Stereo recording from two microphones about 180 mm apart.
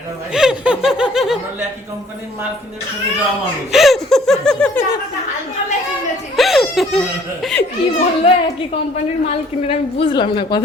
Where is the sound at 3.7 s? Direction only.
Centre (ahead or behind).